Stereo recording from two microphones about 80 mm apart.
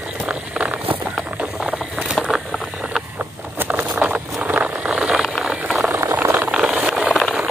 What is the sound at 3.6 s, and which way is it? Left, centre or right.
Vehicle, right.